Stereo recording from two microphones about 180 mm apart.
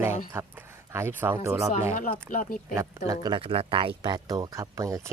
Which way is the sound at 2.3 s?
45° left (ahead or behind).